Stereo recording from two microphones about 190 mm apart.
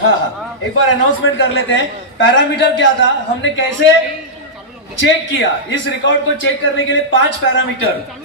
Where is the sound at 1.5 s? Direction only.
70° left (ahead or behind).